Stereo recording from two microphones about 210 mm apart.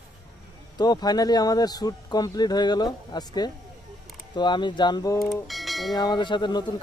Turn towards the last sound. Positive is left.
turn(degrees=20)  # may be behind; listen again after turning